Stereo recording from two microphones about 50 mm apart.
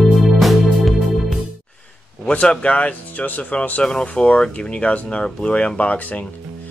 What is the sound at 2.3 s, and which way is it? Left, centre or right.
Speech, left.